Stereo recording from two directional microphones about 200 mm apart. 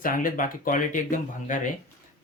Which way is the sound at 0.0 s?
45° left (ahead or behind).